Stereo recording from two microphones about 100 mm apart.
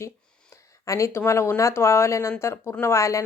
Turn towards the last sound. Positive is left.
turn(degrees=30)  # may be behind; listen again after turning